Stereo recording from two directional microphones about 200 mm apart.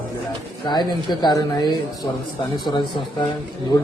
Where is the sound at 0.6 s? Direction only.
20° left (ahead or behind).